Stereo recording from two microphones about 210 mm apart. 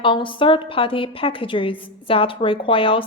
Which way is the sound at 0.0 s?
25° left (ahead or behind).